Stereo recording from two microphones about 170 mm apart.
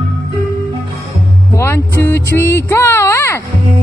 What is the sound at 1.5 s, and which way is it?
Music, 15° left (ahead or behind).